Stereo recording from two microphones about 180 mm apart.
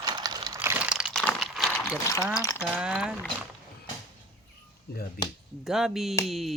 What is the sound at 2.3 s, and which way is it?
Speech, 20° left (ahead or behind).